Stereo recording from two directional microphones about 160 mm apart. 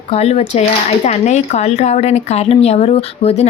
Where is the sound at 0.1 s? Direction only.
40° left (ahead or behind).